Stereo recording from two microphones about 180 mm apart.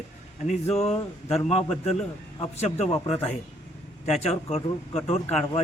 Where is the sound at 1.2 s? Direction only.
35° left (ahead or behind).